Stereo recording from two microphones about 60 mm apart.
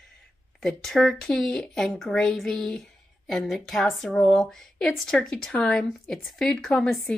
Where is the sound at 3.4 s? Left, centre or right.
Centre.